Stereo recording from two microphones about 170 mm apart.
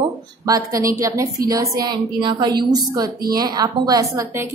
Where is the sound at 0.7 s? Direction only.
20° right (ahead or behind).